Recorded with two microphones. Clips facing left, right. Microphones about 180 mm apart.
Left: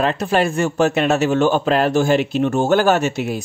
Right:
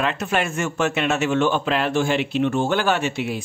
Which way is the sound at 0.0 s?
35° left (ahead or behind).